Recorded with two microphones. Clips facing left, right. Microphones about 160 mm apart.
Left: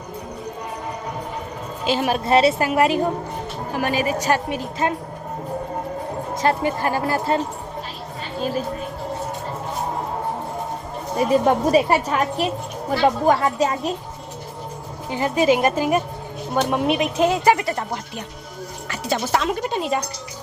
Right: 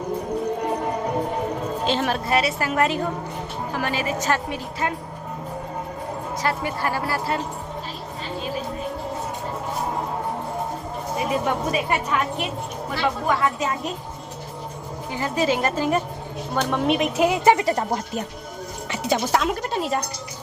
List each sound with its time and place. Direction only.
1.9 s a woman's voice: 10° left (ahead or behind)
2.2 s a woman's voice: 25° left (ahead or behind)
2.6 s a woman's voice: 15° left (ahead or behind)
4.2 s a woman's voice: 15° left (ahead or behind)
6.4 s a woman's voice: 25° left (ahead or behind)
11.2 s a woman's voice: 35° left (ahead or behind)
15.1 s a woman's voice: 20° left (ahead or behind); by 17.2 s centre (ahead or behind)
17.4 s speech: 25° right (ahead or behind)
19.0 s speech: 5° right (ahead or behind)